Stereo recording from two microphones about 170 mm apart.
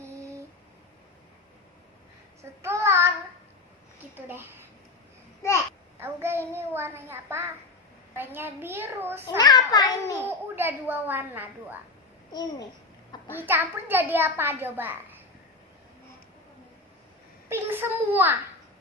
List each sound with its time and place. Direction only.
2.4 s child singing: 15° right (ahead or behind)
4.1 s a woman's voice: 15° right (ahead or behind)
5.4 s a child's voice: 15° left (ahead or behind)
6.0 s a child's voice: 15° right (ahead or behind)
9.4 s a child's voice: 25° left (ahead or behind)
10.2 s a child's voice: 15° right (ahead or behind)
12.3 s a child's voice: 25° left (ahead or behind)
13.3 s a child's voice: 10° right (ahead or behind)
17.5 s a child's voice: 10° right (ahead or behind)